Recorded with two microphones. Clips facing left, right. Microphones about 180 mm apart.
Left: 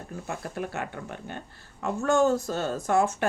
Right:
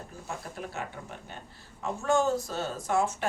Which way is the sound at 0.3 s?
65° left (ahead or behind).